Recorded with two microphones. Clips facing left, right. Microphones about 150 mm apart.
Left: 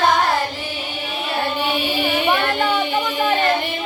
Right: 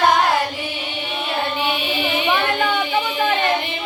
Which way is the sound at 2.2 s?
45° left (ahead or behind).